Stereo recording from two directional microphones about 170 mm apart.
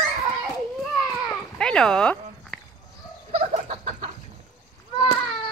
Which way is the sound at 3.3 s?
35° right (ahead or behind).